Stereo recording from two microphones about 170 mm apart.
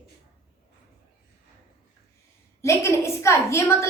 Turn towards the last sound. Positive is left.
turn(degrees=15)  # may be behind; listen again after turning